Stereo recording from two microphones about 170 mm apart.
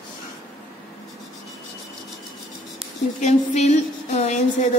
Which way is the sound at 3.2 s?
45° left (ahead or behind).